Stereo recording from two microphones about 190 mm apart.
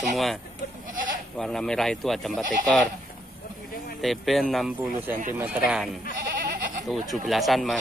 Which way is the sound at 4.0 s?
Centre (ahead or behind).